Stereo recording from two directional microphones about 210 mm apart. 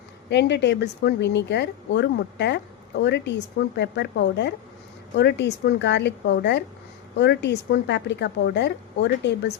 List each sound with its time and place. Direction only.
0.3 s speech: 55° left (ahead or behind)